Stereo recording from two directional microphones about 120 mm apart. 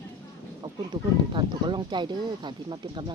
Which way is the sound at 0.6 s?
30° right (ahead or behind).